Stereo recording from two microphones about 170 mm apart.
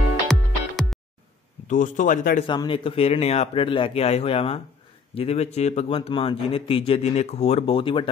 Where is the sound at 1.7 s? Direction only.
50° left (ahead or behind).